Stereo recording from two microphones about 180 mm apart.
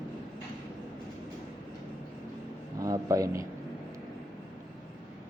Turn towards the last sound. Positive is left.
turn(degrees=-15)  # may be behind; listen again after turning